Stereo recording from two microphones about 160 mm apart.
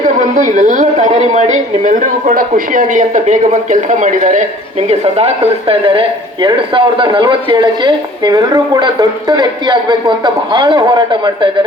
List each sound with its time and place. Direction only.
0.2 s a woman's voice: 55° right (ahead or behind)
4.9 s speech: 40° right (ahead or behind)